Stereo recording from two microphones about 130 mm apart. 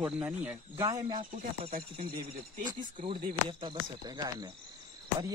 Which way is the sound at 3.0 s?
45° right (ahead or behind).